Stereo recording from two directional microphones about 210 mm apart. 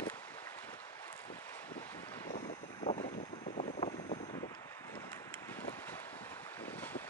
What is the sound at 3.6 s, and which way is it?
Boat, 35° left (ahead or behind).